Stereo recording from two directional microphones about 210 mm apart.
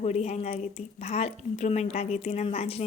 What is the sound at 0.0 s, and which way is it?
A woman's voice, 30° left (ahead or behind).